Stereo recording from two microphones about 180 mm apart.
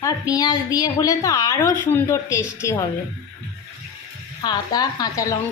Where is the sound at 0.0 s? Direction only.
20° left (ahead or behind).